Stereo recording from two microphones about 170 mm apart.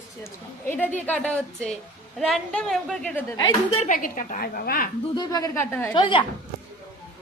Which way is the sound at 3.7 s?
50° left (ahead or behind).